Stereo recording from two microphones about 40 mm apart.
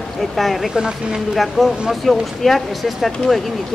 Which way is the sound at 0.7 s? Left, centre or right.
Centre.